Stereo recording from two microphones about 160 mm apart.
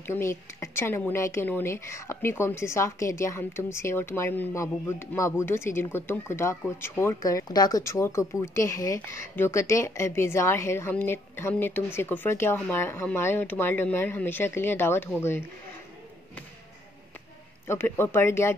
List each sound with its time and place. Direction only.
0.0 s speech: 15° left (ahead or behind)
17.6 s speech: 15° left (ahead or behind)